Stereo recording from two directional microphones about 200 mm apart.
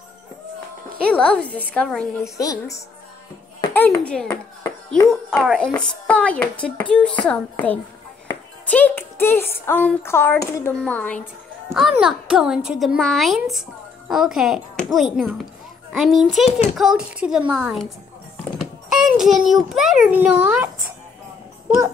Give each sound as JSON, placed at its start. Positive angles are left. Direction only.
{"t": 1.0, "sound": "a child's voice", "side_deg": 5}
{"t": 2.3, "sound": "a child's voice", "side_deg": 15}
{"t": 16.4, "sound": "a child's voice", "side_deg": 30}
{"t": 16.7, "sound": "a child's voice", "side_deg": -5}